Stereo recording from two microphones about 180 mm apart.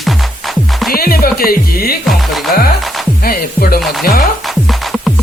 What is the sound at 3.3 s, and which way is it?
Music, 55° left (ahead or behind).